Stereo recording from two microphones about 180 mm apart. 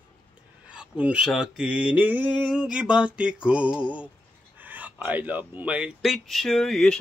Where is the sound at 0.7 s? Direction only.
5° right (ahead or behind).